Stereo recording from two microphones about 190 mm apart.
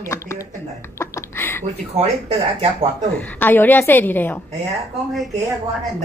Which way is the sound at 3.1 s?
10° left (ahead or behind).